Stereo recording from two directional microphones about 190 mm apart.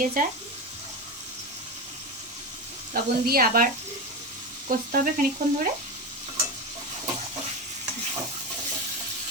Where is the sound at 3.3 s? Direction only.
50° right (ahead or behind).